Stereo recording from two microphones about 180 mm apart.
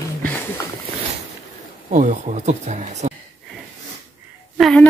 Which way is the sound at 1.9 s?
45° right (ahead or behind).